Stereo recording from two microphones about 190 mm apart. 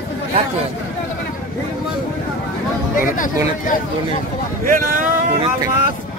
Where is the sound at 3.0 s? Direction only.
45° left (ahead or behind).